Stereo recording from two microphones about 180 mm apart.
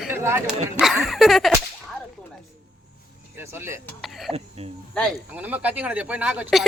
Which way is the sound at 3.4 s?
15° right (ahead or behind).